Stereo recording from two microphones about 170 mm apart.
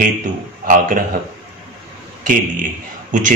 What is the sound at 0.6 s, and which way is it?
Speech, 55° right (ahead or behind).